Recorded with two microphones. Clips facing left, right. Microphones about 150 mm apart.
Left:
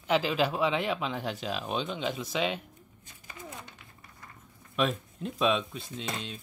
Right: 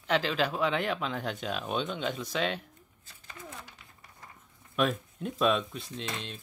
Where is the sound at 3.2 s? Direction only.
15° left (ahead or behind).